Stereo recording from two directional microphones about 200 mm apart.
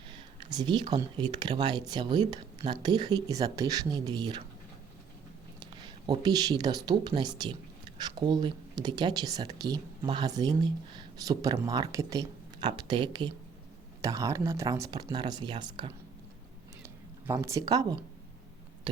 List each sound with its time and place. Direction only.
0.5 s speech: 20° right (ahead or behind)
6.1 s speech: 20° right (ahead or behind)
16.8 s a sound: 15° right (ahead or behind)